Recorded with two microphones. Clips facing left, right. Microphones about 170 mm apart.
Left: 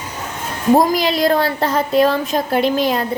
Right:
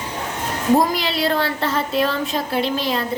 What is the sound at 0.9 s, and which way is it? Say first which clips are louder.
Speech: left 5 dB; 40° left (ahead or behind).